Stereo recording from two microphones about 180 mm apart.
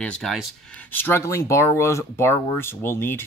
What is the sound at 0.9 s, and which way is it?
Speech, 10° left (ahead or behind).